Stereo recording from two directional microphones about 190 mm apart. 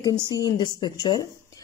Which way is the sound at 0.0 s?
20° left (ahead or behind).